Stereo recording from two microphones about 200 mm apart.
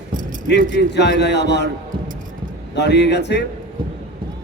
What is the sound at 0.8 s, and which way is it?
Speech, 60° left (ahead or behind).